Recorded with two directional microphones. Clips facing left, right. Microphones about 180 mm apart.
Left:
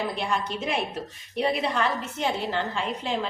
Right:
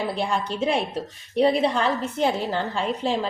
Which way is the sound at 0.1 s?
30° right (ahead or behind).